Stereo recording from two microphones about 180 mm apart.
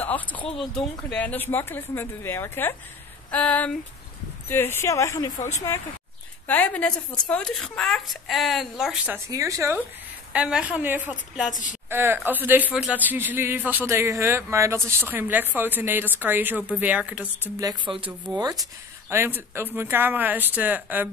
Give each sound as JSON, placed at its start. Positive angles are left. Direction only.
{"t": 0.0, "sound": "a sound", "side_deg": 10}
{"t": 0.6, "sound": "speech", "side_deg": 5}
{"t": 9.3, "sound": "a man's voice", "side_deg": -15}
{"t": 17.6, "sound": "a man's voice", "side_deg": -25}